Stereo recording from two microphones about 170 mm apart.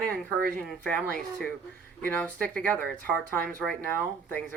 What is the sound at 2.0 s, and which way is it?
Speech, 10° left (ahead or behind).